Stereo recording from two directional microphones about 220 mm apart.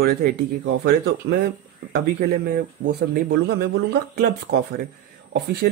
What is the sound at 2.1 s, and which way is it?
Speech, 40° right (ahead or behind).